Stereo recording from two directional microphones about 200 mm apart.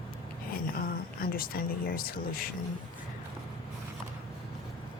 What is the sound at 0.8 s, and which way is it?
Speech, 45° left (ahead or behind).